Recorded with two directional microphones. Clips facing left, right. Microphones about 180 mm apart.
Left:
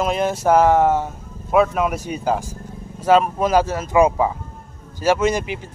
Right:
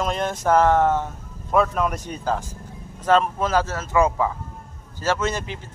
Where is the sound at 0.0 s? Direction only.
5° left (ahead or behind).